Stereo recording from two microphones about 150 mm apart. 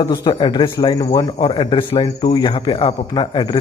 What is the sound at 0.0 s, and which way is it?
A man's voice, 30° left (ahead or behind).